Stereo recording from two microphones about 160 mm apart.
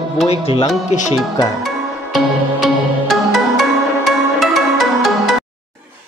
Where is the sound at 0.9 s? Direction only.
45° left (ahead or behind).